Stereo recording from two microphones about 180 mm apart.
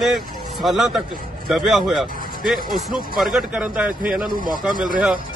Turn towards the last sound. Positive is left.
turn(degrees=-50)  # may be behind; listen again after turning